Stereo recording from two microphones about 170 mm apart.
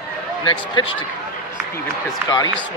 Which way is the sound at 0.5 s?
30° left (ahead or behind).